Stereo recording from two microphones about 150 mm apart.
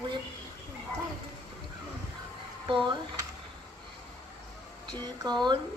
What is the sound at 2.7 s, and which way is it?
Speech, 30° right (ahead or behind).